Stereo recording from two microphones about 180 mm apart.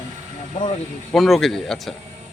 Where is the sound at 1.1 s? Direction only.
Centre (ahead or behind).